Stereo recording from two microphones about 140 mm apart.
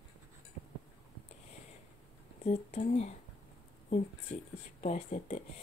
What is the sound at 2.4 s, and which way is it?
Speech, 55° left (ahead or behind).